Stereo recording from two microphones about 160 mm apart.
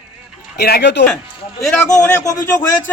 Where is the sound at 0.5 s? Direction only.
85° left.